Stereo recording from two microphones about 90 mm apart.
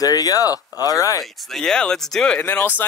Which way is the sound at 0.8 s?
40° left (ahead or behind).